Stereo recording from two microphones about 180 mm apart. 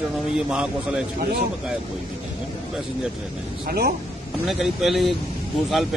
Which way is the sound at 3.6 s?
60° right (ahead or behind).